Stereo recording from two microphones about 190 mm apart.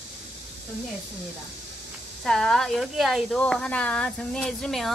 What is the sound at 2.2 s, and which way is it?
Speech, centre (ahead or behind).